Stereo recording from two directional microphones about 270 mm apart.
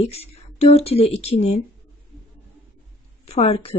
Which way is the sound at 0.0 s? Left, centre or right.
Left.